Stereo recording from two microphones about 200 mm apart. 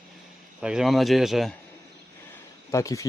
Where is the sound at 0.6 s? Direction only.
5° right (ahead or behind).